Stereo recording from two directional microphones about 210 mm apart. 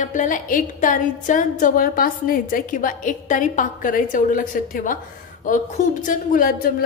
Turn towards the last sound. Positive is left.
turn(degrees=40)  # may be behind; listen again after turning